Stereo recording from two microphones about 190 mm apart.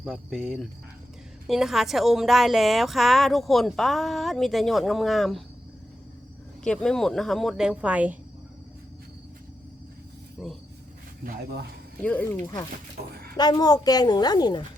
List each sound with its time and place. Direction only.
0.0 s a woman's voice: centre (ahead or behind)
6.7 s a woman's voice: 5° left (ahead or behind)
10.4 s a woman's voice: 5° right (ahead or behind)
11.2 s speech: 60° right (ahead or behind)
12.0 s speech: 10° left (ahead or behind)